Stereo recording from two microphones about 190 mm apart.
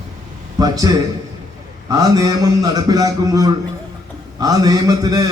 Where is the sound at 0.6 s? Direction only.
20° right (ahead or behind).